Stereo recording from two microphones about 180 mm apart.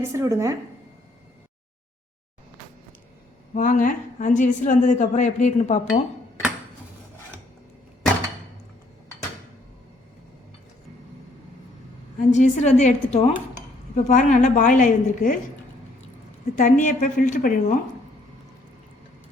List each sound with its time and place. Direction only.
0.0 s a woman's voice: 15° right (ahead or behind)
3.5 s a woman's voice: 45° left (ahead or behind)
12.3 s a woman's voice: 40° left (ahead or behind)
16.6 s a woman's voice: 45° left (ahead or behind)